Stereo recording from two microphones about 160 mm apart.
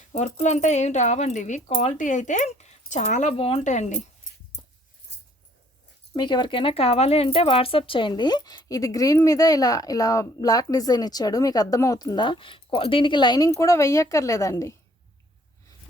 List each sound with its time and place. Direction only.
0.0 s speech: 45° left (ahead or behind)
3.3 s speech: 40° left (ahead or behind)
4.3 s a sound: 55° left (ahead or behind)
6.1 s speech: 30° left (ahead or behind)